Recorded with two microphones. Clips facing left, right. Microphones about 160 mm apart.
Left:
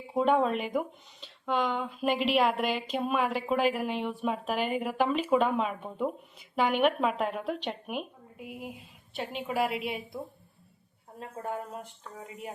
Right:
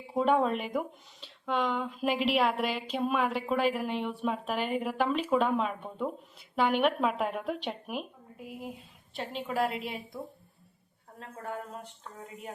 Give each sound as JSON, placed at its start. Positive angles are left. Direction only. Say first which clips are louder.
{"t": 0.2, "sound": "speech", "louder": "left 1 dB", "side_deg": 0}
{"t": 11.2, "sound": "a woman's voice", "louder": "left 3 dB", "side_deg": 20}